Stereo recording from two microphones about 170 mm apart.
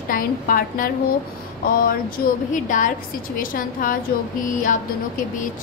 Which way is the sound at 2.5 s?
50° left (ahead or behind).